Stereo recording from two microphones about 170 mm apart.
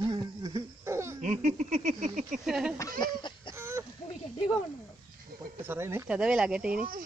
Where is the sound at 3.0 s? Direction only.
25° left (ahead or behind).